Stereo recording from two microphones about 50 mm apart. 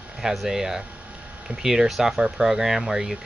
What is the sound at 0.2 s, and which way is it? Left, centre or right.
Speech, centre.